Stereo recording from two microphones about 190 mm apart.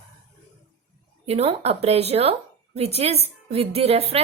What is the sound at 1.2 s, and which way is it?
A woman's voice, 35° right (ahead or behind).